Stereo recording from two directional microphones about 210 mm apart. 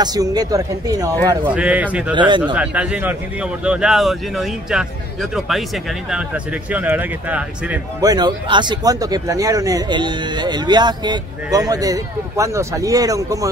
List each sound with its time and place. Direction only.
0.0 s speech: 20° right (ahead or behind)
1.5 s speech: 5° right (ahead or behind)
2.1 s speech: 20° right (ahead or behind)
2.5 s speech: 5° right (ahead or behind)
8.0 s speech: 20° right (ahead or behind)